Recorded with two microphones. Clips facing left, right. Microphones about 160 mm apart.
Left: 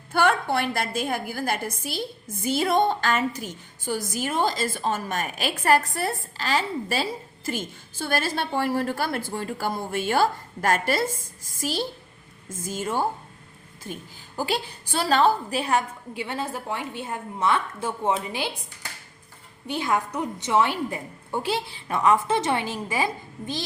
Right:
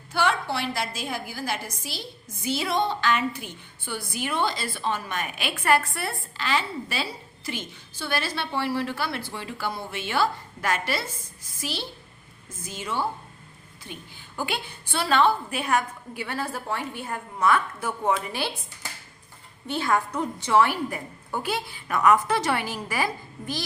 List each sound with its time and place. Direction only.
0.1 s a woman's voice: 50° left (ahead or behind); by 18.5 s 20° left (ahead or behind)
19.6 s a woman's voice: 15° left (ahead or behind)